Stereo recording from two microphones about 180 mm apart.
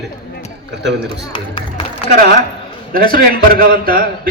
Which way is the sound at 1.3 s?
30° left (ahead or behind).